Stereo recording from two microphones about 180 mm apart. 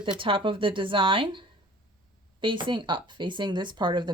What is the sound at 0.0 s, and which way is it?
Speech, 30° right (ahead or behind).